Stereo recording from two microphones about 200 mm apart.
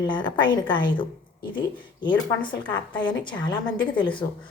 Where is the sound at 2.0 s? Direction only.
25° left (ahead or behind).